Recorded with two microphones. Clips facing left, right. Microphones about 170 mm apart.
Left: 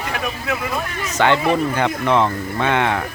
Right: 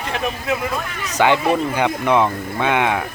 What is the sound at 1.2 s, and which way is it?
Speech, 15° right (ahead or behind).